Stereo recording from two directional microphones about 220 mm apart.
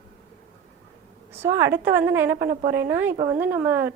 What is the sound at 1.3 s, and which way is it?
Speech, 10° right (ahead or behind).